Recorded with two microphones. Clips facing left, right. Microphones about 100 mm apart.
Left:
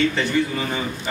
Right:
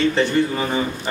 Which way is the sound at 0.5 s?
30° right (ahead or behind).